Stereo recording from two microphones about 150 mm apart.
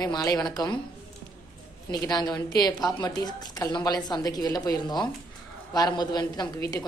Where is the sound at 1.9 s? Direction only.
25° left (ahead or behind).